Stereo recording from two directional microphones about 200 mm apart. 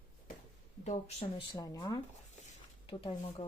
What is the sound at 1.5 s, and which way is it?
Speech, 15° left (ahead or behind).